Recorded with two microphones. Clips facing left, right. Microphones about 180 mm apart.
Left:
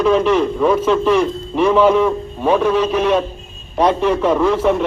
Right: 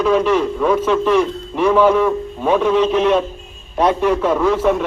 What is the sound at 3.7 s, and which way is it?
Speech, 5° right (ahead or behind).